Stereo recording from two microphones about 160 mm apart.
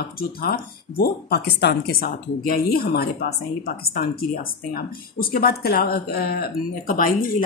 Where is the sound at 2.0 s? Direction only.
65° left (ahead or behind).